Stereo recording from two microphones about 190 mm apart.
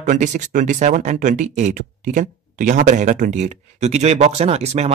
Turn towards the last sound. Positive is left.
turn(degrees=-35)  # may be behind; listen again after turning